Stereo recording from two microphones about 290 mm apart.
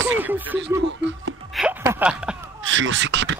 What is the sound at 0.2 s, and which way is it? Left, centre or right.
Speech, centre.